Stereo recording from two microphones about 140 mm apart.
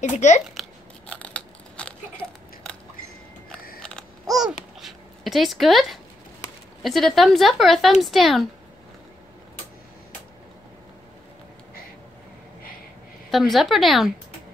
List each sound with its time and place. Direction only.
0.0 s speech: 60° left (ahead or behind)
0.6 s scissors: 10° left (ahead or behind)
3.8 s babbling: centre (ahead or behind)
4.7 s dog: centre (ahead or behind)
6.8 s speech: centre (ahead or behind)
13.3 s speech: centre (ahead or behind)